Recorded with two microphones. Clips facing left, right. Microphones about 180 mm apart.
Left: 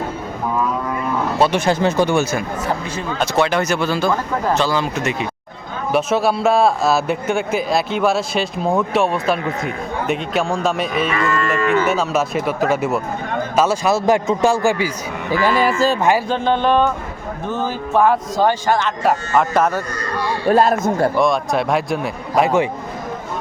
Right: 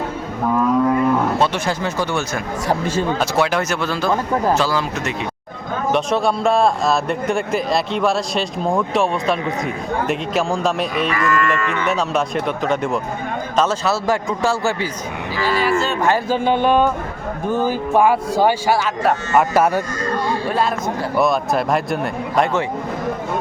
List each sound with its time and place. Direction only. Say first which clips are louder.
1.4 s speech: left 4 dB; 20° left (ahead or behind)
3.2 s a man's voice: left 1 dB; 5° right (ahead or behind)
11.1 s speech: even; 25° left (ahead or behind)
11.9 s a man's voice: left 1 dB; centre (ahead or behind)
15.3 s a man's voice: left 5 dB; 50° left (ahead or behind)
15.6 s speech: left 2 dB; 40° left (ahead or behind)
16.3 s speech: even; 10° right (ahead or behind)
20.5 s a man's voice: left 6 dB; 45° left (ahead or behind)
21.2 s a man's voice: even; centre (ahead or behind)